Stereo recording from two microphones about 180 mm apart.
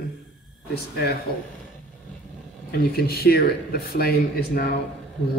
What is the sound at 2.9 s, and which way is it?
Speech, 60° left (ahead or behind).